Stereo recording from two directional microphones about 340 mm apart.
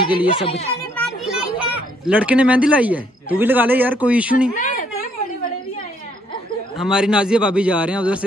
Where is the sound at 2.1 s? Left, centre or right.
Centre.